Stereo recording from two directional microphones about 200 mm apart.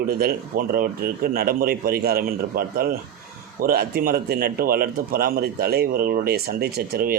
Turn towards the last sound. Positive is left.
turn(degrees=-50)  # may be behind; listen again after turning